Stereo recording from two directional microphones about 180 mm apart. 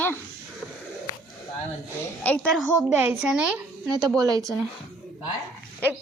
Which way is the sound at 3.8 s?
20° right (ahead or behind).